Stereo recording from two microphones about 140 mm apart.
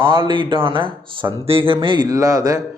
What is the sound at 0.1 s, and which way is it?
A man's voice, 35° right (ahead or behind).